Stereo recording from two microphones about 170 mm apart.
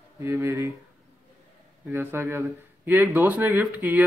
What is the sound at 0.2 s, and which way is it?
Speech, 15° right (ahead or behind).